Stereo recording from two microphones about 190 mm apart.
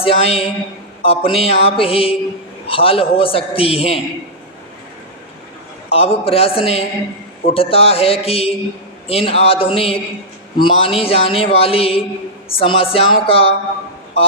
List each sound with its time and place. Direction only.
0.0 s a man's voice: 30° left (ahead or behind)
5.9 s a man's voice: 30° left (ahead or behind)